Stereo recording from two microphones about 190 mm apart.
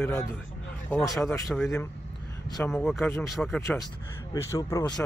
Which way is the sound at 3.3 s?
Centre (ahead or behind).